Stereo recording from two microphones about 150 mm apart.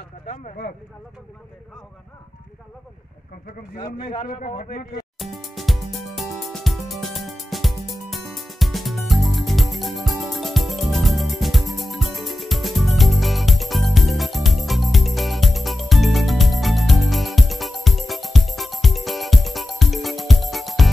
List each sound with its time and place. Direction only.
4.3 s a man's voice: 70° left (ahead or behind)
5.2 s music: centre (ahead or behind)